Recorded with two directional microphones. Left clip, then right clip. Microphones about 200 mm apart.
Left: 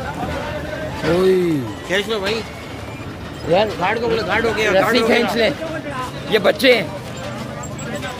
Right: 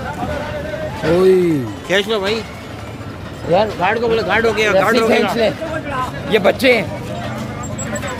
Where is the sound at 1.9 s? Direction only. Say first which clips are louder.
Right 4 dB; 50° right (ahead or behind).